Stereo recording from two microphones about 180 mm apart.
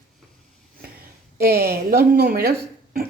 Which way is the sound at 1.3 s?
60° right (ahead or behind).